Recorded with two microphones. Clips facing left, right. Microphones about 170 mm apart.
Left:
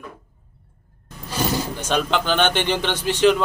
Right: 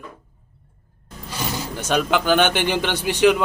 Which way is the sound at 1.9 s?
10° right (ahead or behind).